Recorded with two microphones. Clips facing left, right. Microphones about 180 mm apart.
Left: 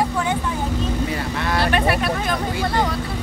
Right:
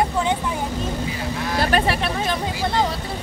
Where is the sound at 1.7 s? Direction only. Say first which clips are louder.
Even; 30° right (ahead or behind).